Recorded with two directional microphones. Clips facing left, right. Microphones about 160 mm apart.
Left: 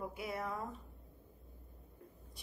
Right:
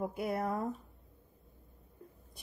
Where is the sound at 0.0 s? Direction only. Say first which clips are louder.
Right 7 dB; 50° right (ahead or behind).